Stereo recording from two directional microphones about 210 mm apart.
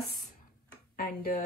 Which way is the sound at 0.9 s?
45° left (ahead or behind).